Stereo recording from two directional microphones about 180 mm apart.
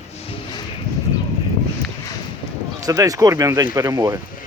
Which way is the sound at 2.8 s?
20° right (ahead or behind).